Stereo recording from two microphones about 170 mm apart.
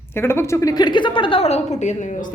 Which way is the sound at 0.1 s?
15° left (ahead or behind).